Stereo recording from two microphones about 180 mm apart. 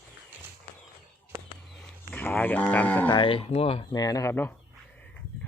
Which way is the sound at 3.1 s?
25° left (ahead or behind).